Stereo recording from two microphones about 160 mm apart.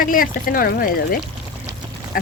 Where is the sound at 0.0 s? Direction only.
60° left (ahead or behind).